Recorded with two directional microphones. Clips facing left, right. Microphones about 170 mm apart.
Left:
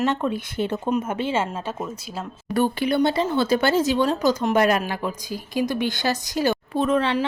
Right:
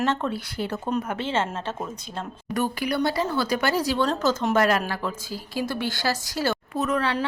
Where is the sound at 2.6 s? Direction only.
25° left (ahead or behind).